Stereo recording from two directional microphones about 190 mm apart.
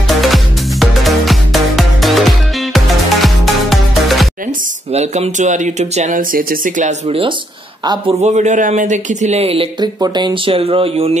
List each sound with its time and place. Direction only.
0.2 s music: centre (ahead or behind)
4.9 s speech: 35° right (ahead or behind)
8.2 s speech: 40° right (ahead or behind)